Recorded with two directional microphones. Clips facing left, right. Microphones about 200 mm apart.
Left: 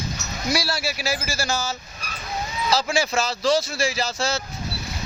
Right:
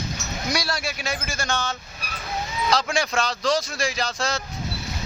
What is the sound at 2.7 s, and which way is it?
Speech, 5° left (ahead or behind).